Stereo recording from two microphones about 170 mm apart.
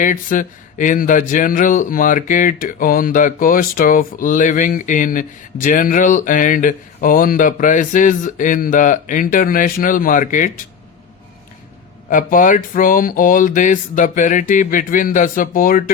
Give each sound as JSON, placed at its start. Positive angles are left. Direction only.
{"t": 0.0, "sound": "speech", "side_deg": 50}
{"t": 12.0, "sound": "speech", "side_deg": 55}